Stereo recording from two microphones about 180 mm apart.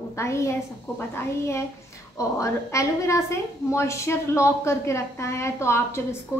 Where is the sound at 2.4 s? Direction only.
15° left (ahead or behind).